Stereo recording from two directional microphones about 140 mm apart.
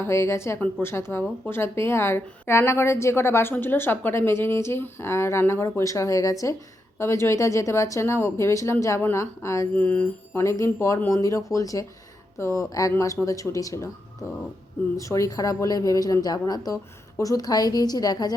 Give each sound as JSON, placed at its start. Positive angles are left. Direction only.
{"t": 0.0, "sound": "a woman's voice", "side_deg": 20}